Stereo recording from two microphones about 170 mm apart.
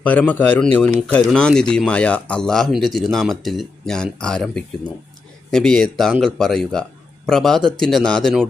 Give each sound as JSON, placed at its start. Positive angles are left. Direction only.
{"t": 0.0, "sound": "speech", "side_deg": 10}